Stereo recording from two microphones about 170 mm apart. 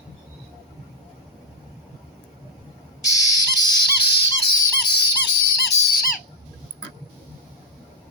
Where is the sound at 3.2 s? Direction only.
90° right.